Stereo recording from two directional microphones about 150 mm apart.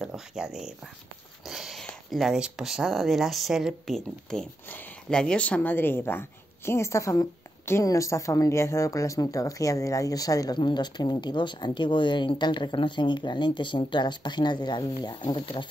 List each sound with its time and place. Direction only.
0.0 s speech: 5° right (ahead or behind)
1.5 s a sound: centre (ahead or behind)
1.9 s a woman's voice: centre (ahead or behind); by 15.6 s 30° left (ahead or behind)